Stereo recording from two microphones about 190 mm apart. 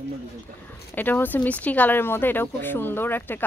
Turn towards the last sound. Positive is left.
turn(degrees=10)  # may be behind; listen again after turning